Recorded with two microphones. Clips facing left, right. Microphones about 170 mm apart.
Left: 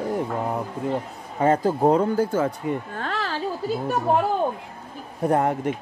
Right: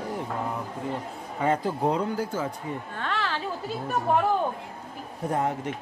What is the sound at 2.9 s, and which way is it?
Speech, 40° left (ahead or behind).